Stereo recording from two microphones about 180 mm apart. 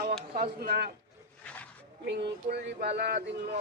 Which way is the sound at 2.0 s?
70° right (ahead or behind).